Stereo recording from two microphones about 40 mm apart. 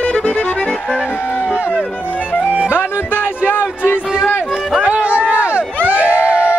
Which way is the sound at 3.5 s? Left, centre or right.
Left.